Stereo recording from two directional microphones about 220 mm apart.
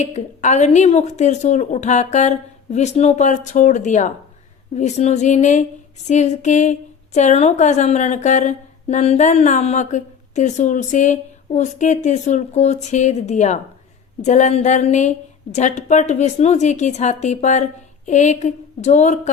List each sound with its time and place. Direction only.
0.0 s a woman's voice: 30° left (ahead or behind)